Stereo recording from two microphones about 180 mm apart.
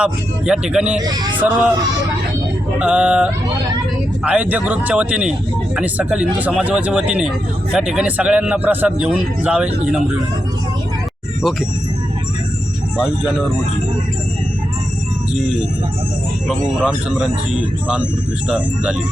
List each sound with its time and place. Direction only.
0.0 s a man's voice: 5° right (ahead or behind)
1.0 s male singing: 20° right (ahead or behind)
1.4 s speech: 10° right (ahead or behind)
2.7 s a man's voice: 5° right (ahead or behind)
13.0 s a man's voice: 5° right (ahead or behind)
16.5 s a man's voice: 5° right (ahead or behind)
18.4 s a man's voice: 5° right (ahead or behind)